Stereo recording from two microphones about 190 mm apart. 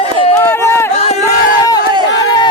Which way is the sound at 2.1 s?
20° left (ahead or behind).